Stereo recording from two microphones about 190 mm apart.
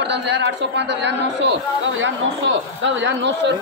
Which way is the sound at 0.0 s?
65° right (ahead or behind).